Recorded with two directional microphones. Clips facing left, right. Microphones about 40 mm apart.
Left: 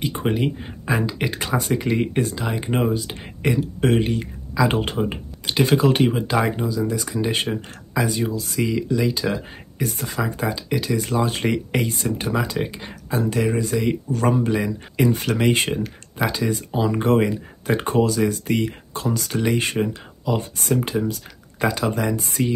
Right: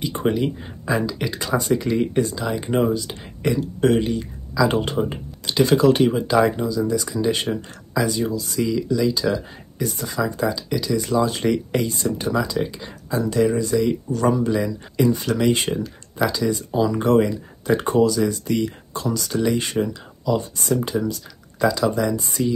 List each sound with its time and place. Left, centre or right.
0.1 s speech: centre
0.8 s speech: left
4.8 s speech: left
6.9 s speech: left
12.3 s speech: left